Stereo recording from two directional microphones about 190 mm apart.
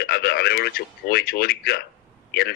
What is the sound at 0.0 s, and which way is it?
A man's voice, 55° left (ahead or behind).